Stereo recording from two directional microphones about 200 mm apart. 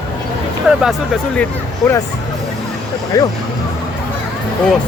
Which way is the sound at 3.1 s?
15° left (ahead or behind).